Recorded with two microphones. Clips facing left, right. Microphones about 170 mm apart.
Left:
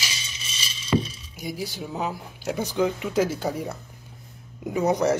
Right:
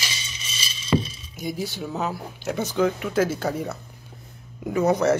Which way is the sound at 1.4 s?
10° left (ahead or behind).